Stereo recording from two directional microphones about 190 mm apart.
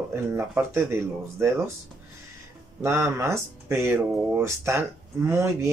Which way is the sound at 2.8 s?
10° right (ahead or behind).